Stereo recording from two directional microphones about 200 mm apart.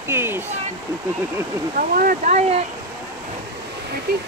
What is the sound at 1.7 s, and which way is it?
Speech, 45° right (ahead or behind).